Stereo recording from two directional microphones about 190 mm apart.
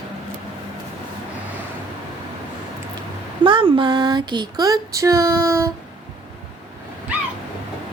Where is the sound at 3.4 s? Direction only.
25° right (ahead or behind).